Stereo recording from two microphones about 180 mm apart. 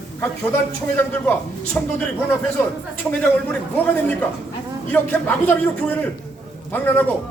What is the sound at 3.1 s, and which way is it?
A man's voice, 10° left (ahead or behind).